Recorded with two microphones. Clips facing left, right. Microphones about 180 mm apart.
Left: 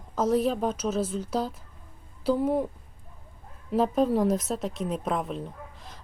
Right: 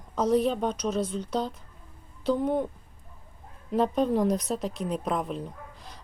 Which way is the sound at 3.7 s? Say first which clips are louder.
Left 1 dB; centre (ahead or behind).